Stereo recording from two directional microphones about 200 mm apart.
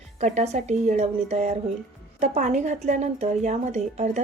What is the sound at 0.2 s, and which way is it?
Speech, 35° right (ahead or behind).